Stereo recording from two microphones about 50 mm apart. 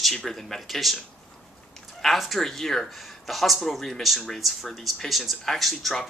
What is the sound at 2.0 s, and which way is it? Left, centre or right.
Speech, centre.